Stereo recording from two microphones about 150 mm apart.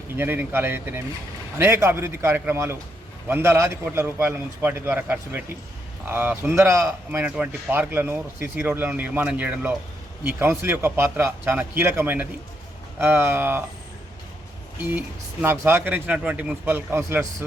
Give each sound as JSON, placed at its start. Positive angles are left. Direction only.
{"t": 0.2, "sound": "speech", "side_deg": -15}
{"t": 14.8, "sound": "speech", "side_deg": -15}